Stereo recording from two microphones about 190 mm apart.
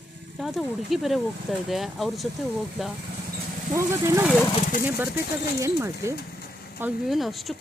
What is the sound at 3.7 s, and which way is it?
Speech, 15° right (ahead or behind).